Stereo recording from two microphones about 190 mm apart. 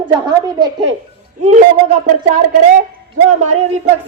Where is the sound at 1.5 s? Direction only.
35° right (ahead or behind).